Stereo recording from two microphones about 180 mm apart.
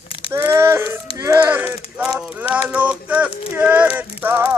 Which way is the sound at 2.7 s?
5° right (ahead or behind).